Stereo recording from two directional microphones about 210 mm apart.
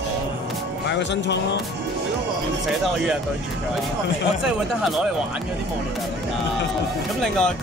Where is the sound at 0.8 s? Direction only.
55° left (ahead or behind).